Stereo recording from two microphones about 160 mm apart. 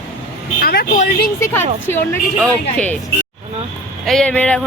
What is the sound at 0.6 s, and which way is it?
Speech, 70° left (ahead or behind).